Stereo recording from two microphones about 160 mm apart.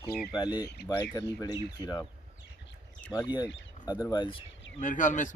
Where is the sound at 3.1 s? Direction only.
25° left (ahead or behind).